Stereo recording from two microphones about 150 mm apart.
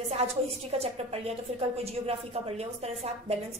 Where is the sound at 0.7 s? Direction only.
40° right (ahead or behind).